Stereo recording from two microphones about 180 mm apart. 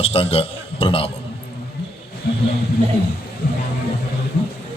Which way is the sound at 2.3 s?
60° left (ahead or behind).